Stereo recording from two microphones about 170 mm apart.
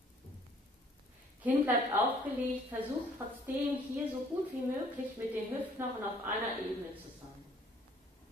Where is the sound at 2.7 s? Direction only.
10° right (ahead or behind).